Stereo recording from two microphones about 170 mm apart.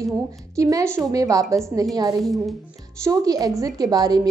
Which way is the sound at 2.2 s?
Centre (ahead or behind).